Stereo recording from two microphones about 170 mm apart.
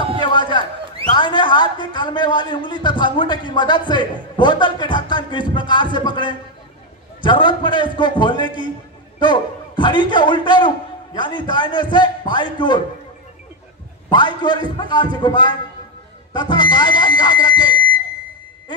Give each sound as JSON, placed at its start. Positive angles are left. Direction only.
{"t": 0.2, "sound": "a sound", "side_deg": 30}
{"t": 1.1, "sound": "a man's voice", "side_deg": 30}
{"t": 14.1, "sound": "a man's voice", "side_deg": 25}